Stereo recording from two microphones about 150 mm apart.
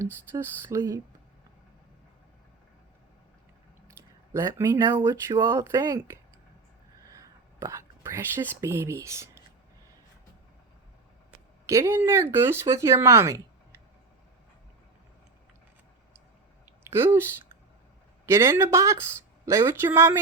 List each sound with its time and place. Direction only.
0.0 s speech: 15° right (ahead or behind)
3.8 s speech: 20° right (ahead or behind)
7.6 s speech: 20° right (ahead or behind)
11.6 s speech: 20° right (ahead or behind)
16.8 s speech: 15° right (ahead or behind)
18.3 s speech: 20° right (ahead or behind)